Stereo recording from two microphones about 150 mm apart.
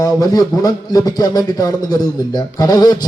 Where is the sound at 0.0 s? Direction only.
25° left (ahead or behind).